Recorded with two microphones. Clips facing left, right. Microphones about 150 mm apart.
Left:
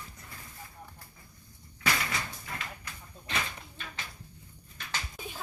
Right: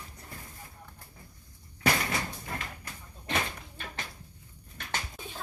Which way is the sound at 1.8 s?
50° right (ahead or behind).